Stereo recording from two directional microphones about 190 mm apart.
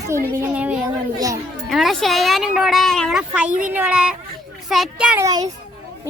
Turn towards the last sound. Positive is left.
turn(degrees=-5)  # may be behind; listen again after turning